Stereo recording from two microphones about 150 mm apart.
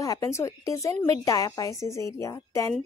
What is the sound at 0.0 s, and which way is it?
A woman's voice, 20° left (ahead or behind).